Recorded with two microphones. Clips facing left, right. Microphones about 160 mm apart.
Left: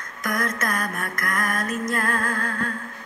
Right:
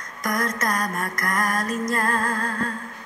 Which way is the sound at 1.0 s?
55° left (ahead or behind).